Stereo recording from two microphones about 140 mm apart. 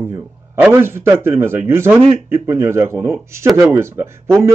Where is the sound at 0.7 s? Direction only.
15° right (ahead or behind).